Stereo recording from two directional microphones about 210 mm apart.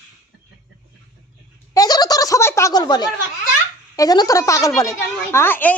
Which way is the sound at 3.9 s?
20° left (ahead or behind).